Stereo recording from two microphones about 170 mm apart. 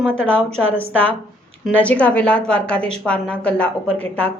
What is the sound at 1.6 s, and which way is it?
A woman's voice, 10° left (ahead or behind).